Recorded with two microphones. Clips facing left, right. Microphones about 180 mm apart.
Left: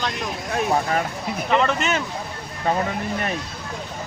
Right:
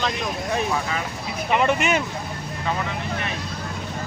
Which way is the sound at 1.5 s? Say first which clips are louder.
Right 1 dB; 10° right (ahead or behind).